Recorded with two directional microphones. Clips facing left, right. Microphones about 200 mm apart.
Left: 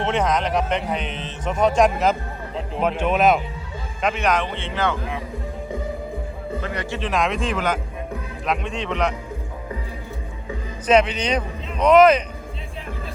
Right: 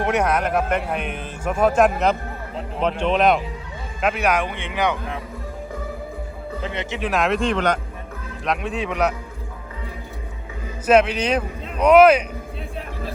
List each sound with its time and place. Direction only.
0.0 s a man's voice: 10° right (ahead or behind)
4.0 s speech: 10° right (ahead or behind)
6.6 s a man's voice: 25° right (ahead or behind)
7.0 s a man's voice: 5° right (ahead or behind)
10.8 s speech: 5° right (ahead or behind)